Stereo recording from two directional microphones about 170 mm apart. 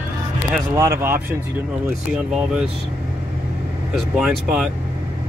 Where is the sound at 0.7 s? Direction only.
15° right (ahead or behind).